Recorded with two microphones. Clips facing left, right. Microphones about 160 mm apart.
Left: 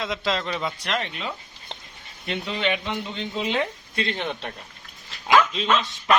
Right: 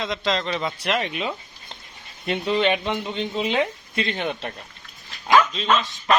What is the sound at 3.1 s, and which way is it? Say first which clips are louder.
Speech: right 3 dB; 15° right (ahead or behind).